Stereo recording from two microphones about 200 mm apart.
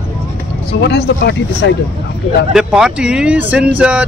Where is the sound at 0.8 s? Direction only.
60° left (ahead or behind).